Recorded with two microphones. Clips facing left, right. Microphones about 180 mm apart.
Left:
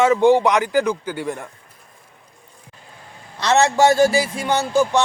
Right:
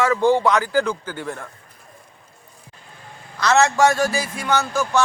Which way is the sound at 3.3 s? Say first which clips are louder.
Left 1 dB; 30° left (ahead or behind).